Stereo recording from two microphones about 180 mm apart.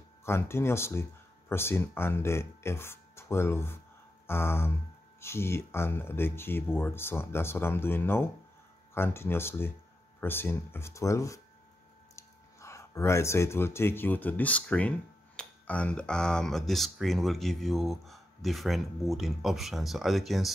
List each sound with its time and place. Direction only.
0.2 s speech: 15° left (ahead or behind)